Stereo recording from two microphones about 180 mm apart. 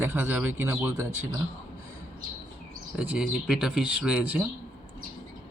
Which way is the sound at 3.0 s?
5° right (ahead or behind).